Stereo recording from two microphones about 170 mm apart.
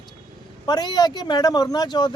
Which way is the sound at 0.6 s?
25° left (ahead or behind).